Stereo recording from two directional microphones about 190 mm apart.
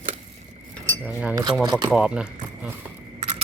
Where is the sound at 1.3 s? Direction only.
20° right (ahead or behind).